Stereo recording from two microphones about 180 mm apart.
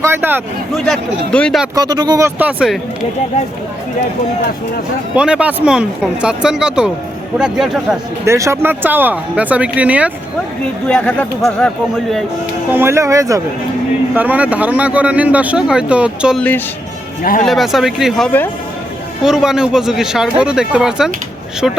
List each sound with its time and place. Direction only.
0.0 s speech: 10° right (ahead or behind)
0.9 s speech: 5° left (ahead or behind)
1.7 s speech: 20° right (ahead or behind); by 2.7 s 5° right (ahead or behind)
5.1 s speech: 5° right (ahead or behind)
8.2 s speech: 15° right (ahead or behind)
10.8 s speech: 5° left (ahead or behind)
12.7 s speech: 15° right (ahead or behind)
17.4 s speech: centre (ahead or behind)